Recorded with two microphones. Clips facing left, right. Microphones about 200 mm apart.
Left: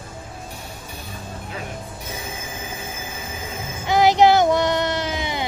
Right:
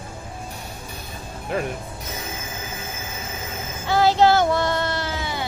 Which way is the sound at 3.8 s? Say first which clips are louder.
Left 2 dB; 15° left (ahead or behind).